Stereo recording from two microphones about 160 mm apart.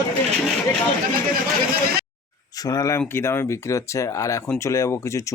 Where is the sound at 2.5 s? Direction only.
20° left (ahead or behind).